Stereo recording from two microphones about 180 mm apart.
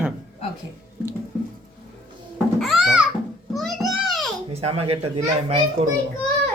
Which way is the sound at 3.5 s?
Centre (ahead or behind).